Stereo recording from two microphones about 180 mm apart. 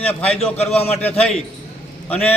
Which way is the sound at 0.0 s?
5° left (ahead or behind).